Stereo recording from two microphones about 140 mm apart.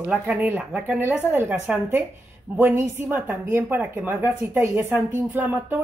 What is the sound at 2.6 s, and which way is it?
A woman's voice, 15° right (ahead or behind).